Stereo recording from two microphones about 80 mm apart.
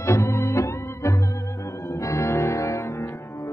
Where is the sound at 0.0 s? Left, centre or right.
Left.